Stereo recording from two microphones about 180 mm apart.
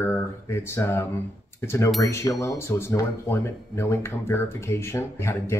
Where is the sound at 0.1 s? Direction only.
15° left (ahead or behind).